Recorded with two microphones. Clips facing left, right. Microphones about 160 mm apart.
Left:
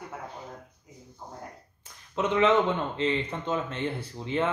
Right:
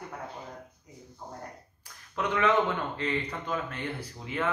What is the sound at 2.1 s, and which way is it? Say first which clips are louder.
Speech: left 3 dB; 20° left (ahead or behind).